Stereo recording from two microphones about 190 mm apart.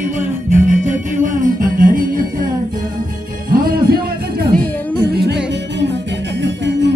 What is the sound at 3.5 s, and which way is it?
Music, 50° right (ahead or behind).